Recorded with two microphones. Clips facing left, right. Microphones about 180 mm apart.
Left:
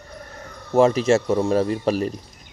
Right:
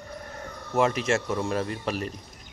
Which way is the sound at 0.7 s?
35° left (ahead or behind).